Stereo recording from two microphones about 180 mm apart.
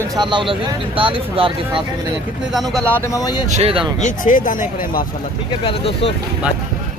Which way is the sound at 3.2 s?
25° left (ahead or behind).